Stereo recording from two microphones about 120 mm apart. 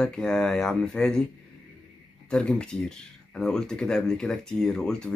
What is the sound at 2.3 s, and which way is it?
Speech, 5° left (ahead or behind).